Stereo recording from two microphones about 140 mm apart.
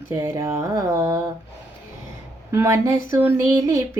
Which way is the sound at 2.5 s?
20° right (ahead or behind).